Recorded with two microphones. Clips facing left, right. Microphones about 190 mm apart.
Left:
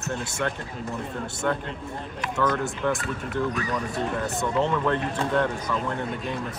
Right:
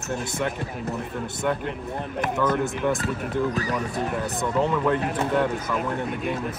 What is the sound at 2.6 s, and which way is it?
Speech, 20° right (ahead or behind).